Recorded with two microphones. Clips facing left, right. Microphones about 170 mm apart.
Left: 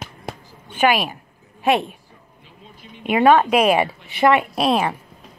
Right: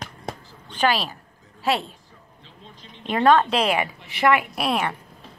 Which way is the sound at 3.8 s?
25° left (ahead or behind).